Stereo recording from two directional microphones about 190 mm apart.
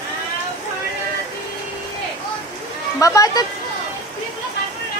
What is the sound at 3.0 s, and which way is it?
Speech, 15° left (ahead or behind).